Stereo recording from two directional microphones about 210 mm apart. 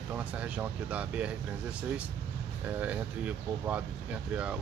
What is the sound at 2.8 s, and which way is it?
Speech, 5° right (ahead or behind).